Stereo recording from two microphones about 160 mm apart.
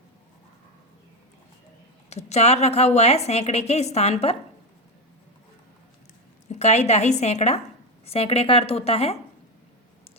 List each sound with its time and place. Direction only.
2.0 s a woman's voice: 45° left (ahead or behind)
6.5 s a woman's voice: 45° left (ahead or behind)